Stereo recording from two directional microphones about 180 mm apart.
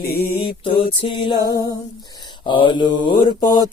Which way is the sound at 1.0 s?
30° left (ahead or behind).